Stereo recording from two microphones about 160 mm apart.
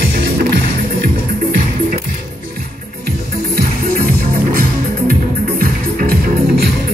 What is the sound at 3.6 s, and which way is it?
Music, 65° right (ahead or behind).